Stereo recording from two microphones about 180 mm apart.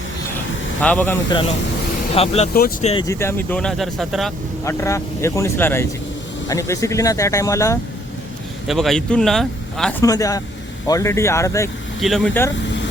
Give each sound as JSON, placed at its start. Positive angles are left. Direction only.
{"t": 0.8, "sound": "speech", "side_deg": 10}
{"t": 2.1, "sound": "speech", "side_deg": 35}
{"t": 2.5, "sound": "speech", "side_deg": 55}
{"t": 2.8, "sound": "speech", "side_deg": 30}
{"t": 3.1, "sound": "speech", "side_deg": 15}
{"t": 4.6, "sound": "speech", "side_deg": 15}
{"t": 8.6, "sound": "speech", "side_deg": 0}
{"t": 10.0, "sound": "speech", "side_deg": 20}
{"t": 11.9, "sound": "speech", "side_deg": 0}